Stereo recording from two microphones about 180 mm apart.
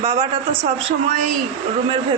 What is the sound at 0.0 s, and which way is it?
A woman's voice, 30° right (ahead or behind).